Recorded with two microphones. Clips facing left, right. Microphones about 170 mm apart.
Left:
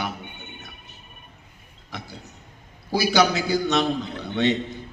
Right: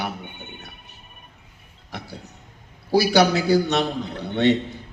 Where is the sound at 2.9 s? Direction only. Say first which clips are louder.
Right 3 dB; 65° right (ahead or behind).